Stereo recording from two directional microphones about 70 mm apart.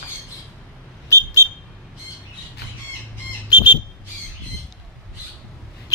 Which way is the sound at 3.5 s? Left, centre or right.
Left.